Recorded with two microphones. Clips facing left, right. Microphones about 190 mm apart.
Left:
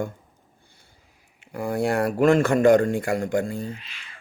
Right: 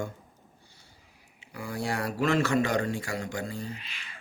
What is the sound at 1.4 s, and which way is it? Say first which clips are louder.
Speech: left 9 dB; 50° left (ahead or behind).